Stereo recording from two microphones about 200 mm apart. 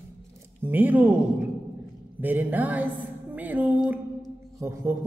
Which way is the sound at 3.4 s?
10° right (ahead or behind).